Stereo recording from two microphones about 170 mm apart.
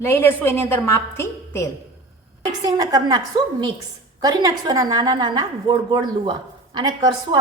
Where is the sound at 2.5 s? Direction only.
25° right (ahead or behind).